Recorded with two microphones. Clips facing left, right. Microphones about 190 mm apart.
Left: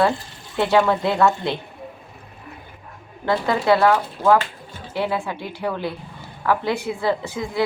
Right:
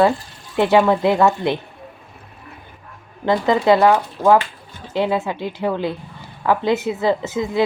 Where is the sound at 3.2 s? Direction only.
20° right (ahead or behind).